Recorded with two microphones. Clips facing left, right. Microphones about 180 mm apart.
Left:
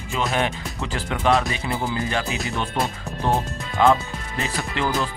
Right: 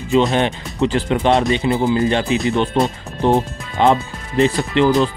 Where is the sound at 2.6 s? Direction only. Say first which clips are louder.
Right 8 dB; 25° right (ahead or behind).